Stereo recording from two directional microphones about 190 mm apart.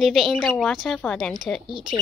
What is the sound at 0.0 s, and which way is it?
Speech, centre (ahead or behind).